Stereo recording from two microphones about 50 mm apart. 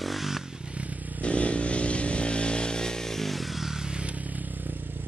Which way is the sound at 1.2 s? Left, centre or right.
Left.